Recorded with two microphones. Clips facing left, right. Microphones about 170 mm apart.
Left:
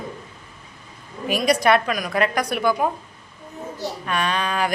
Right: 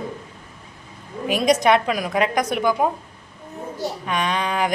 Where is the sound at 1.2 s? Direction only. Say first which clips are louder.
Right 1 dB; 20° right (ahead or behind).